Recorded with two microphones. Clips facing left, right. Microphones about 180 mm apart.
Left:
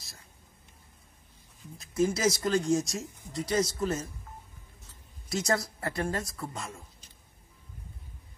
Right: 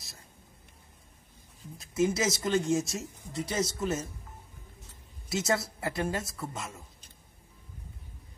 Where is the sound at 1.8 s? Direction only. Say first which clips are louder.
Even; centre (ahead or behind).